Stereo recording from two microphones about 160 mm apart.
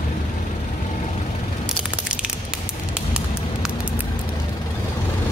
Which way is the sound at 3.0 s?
5° right (ahead or behind).